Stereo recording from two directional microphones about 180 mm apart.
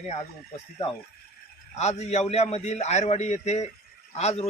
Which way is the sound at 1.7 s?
40° left (ahead or behind).